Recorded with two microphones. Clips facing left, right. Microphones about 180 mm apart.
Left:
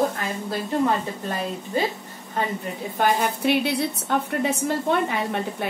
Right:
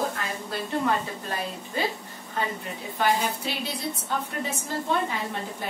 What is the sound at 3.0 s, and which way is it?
A woman's voice, 60° left (ahead or behind).